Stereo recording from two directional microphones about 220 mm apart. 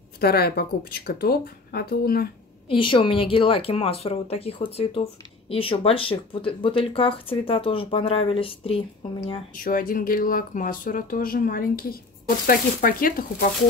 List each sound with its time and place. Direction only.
0.2 s speech: 45° left (ahead or behind)
2.7 s speech: 25° left (ahead or behind)
9.5 s speech: 40° left (ahead or behind)